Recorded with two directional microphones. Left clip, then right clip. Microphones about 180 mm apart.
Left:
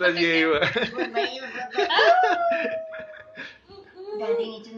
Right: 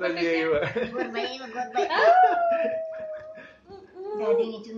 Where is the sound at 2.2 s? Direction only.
50° left (ahead or behind).